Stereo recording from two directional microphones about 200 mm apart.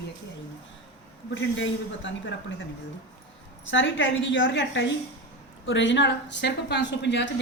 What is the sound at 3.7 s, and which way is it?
A woman's voice, 70° left (ahead or behind).